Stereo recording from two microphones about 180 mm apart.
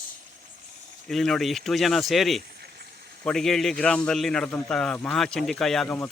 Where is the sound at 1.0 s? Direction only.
Centre (ahead or behind).